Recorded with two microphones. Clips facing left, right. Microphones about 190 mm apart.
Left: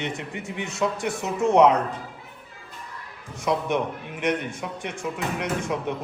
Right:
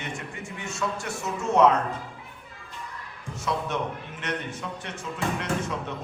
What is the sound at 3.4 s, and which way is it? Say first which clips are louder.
Speech: left 5 dB; 15° left (ahead or behind).